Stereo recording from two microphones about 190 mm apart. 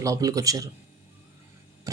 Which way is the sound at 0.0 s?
15° right (ahead or behind).